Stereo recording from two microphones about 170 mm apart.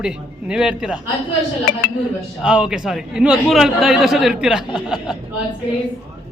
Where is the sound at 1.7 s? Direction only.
55° left (ahead or behind).